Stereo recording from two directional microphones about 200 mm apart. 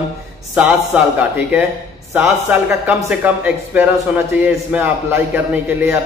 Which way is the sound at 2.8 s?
10° right (ahead or behind).